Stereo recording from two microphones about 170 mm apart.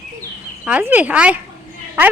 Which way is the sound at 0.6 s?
10° right (ahead or behind).